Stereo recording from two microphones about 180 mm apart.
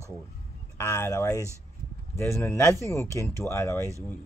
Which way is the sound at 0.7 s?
15° left (ahead or behind).